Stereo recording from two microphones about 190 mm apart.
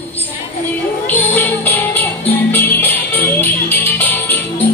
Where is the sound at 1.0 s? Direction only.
10° left (ahead or behind).